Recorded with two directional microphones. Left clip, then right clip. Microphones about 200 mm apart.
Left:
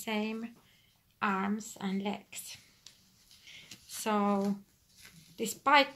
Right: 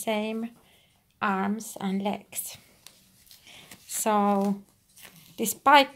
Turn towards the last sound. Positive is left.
turn(degrees=-45)  # may be behind; listen again after turning